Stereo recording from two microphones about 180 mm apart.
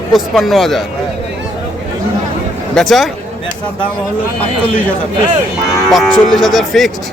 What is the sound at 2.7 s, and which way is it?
Speech, centre (ahead or behind).